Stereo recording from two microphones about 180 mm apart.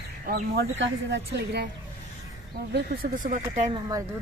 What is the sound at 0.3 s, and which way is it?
Speech, 65° right (ahead or behind).